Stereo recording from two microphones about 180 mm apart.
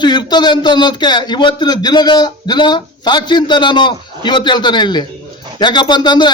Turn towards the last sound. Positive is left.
turn(degrees=25)  # may be behind; listen again after turning